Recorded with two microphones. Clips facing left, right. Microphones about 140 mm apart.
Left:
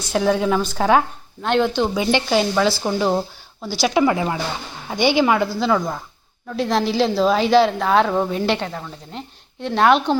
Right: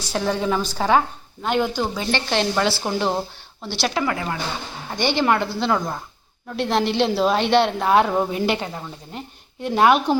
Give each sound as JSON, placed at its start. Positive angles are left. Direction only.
{"t": 0.1, "sound": "a woman's voice", "side_deg": 0}
{"t": 2.0, "sound": "a woman's voice", "side_deg": 10}
{"t": 3.9, "sound": "speech", "side_deg": 20}
{"t": 4.9, "sound": "a woman's voice", "side_deg": 10}